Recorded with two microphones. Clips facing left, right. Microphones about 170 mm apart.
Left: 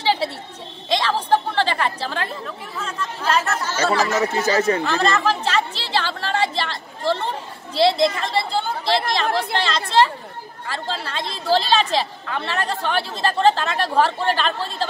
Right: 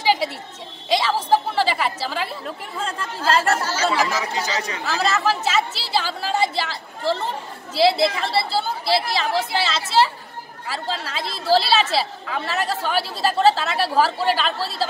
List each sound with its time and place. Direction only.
0.0 s a sound: 10° right (ahead or behind)
3.4 s chatter: 30° right (ahead or behind)
4.0 s speech: 50° left (ahead or behind)
4.8 s chatter: 5° right (ahead or behind)
10.7 s a woman's voice: 5° right (ahead or behind)